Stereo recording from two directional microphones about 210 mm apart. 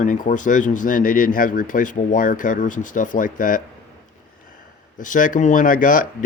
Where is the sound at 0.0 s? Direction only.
35° left (ahead or behind).